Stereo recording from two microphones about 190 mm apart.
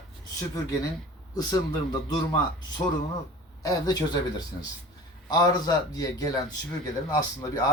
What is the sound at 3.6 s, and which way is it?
A man's voice, 20° left (ahead or behind).